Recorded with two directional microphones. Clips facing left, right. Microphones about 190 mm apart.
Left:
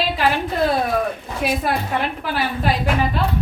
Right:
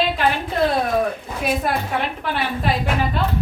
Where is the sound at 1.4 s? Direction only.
Centre (ahead or behind).